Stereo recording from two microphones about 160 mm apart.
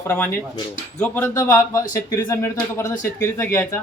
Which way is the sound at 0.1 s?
10° left (ahead or behind).